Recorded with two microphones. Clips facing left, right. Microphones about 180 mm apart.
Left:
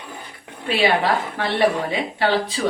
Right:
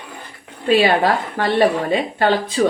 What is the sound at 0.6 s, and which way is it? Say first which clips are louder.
Speech: right 4 dB; 40° right (ahead or behind).